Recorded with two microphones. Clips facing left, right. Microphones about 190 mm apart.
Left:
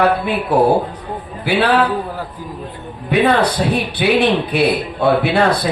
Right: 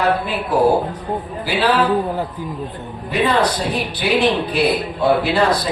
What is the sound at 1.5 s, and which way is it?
Speech, 60° left (ahead or behind).